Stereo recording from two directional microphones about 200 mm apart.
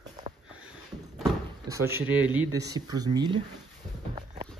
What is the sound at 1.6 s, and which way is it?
Speech, 15° right (ahead or behind).